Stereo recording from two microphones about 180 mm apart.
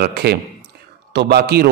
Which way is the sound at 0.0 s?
60° right (ahead or behind).